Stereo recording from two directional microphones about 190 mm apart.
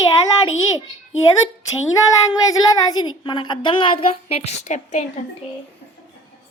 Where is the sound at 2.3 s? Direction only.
20° left (ahead or behind); by 5.0 s 35° left (ahead or behind).